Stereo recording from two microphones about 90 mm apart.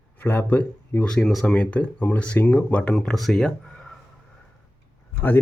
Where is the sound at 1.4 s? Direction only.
15° left (ahead or behind).